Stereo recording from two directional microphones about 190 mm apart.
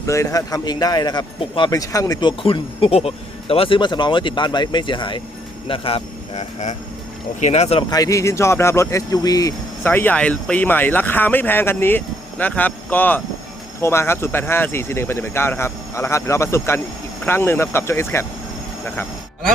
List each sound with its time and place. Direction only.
0.0 s a man's voice: 15° left (ahead or behind)
2.4 s a man's voice: 30° left (ahead or behind)
7.9 s speech: 20° left (ahead or behind)